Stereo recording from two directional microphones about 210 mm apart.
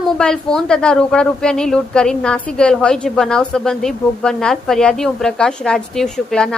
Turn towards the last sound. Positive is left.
turn(degrees=0)  # may be behind; listen again after turning